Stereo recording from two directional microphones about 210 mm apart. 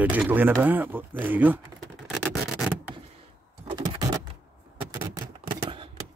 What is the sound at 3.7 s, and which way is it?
Vehicle, 20° right (ahead or behind).